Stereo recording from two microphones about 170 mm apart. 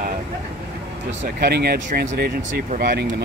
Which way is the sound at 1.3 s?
65° right (ahead or behind).